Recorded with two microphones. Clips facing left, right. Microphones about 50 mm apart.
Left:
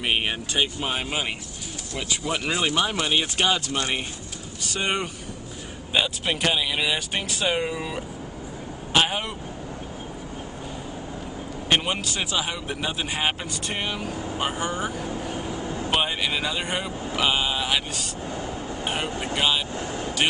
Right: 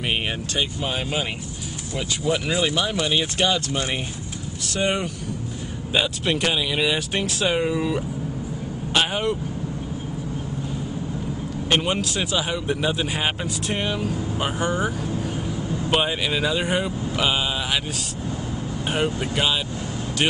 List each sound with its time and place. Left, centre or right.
0.1 s speech: centre
4.7 s a man's voice: centre
8.9 s vehicle: centre
11.7 s a man's voice: centre
15.4 s vehicle: left
15.9 s a man's voice: centre
19.0 s speech: left
19.3 s a man's voice: centre